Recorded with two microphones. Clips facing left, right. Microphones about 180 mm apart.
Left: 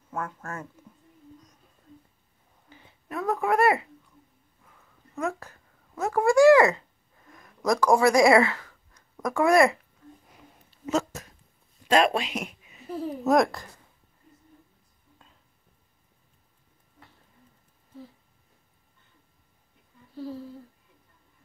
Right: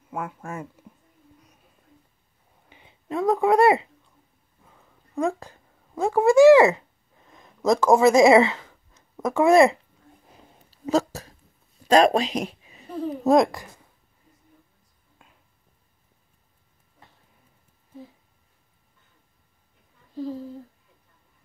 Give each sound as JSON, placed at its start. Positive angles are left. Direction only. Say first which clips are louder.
{"t": 0.1, "sound": "speech", "louder": "right 2 dB", "side_deg": -15}
{"t": 2.7, "sound": "speech", "louder": "right 6 dB", "side_deg": -20}
{"t": 4.6, "sound": "a sound", "louder": "right 2 dB", "side_deg": -30}
{"t": 5.9, "sound": "speech", "louder": "right 4 dB", "side_deg": -25}
{"t": 10.2, "sound": "a sound", "louder": "right 1 dB", "side_deg": -30}
{"t": 11.8, "sound": "speech", "louder": "right 5 dB", "side_deg": -40}
{"t": 13.4, "sound": "speech", "louder": "right 3 dB", "side_deg": -15}